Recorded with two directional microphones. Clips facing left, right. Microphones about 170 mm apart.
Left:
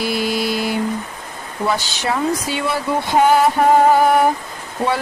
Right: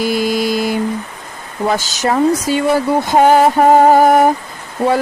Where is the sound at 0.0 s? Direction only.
45° right (ahead or behind).